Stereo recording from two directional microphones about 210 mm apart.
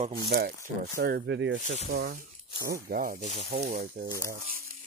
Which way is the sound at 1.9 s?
45° right (ahead or behind).